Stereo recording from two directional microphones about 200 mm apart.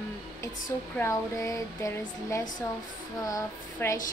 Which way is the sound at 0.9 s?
15° left (ahead or behind).